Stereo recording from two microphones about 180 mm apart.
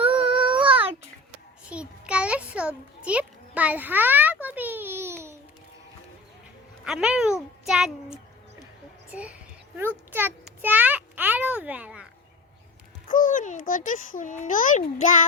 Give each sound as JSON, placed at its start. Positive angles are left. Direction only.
{"t": 0.4, "sound": "child singing", "side_deg": -30}
{"t": 1.7, "sound": "a sound", "side_deg": -5}
{"t": 6.8, "sound": "child singing", "side_deg": -5}
{"t": 9.1, "sound": "a child's voice", "side_deg": -5}
{"t": 13.1, "sound": "a child's voice", "side_deg": 45}